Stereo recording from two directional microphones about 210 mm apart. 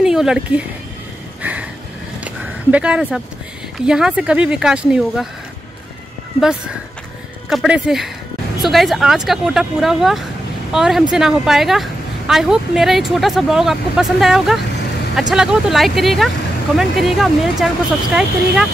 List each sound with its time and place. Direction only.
0.0 s speech: 5° right (ahead or behind)
1.4 s a sound: 5° right (ahead or behind)
2.7 s a woman's voice: 5° right (ahead or behind)
7.4 s a woman's voice: 5° right (ahead or behind)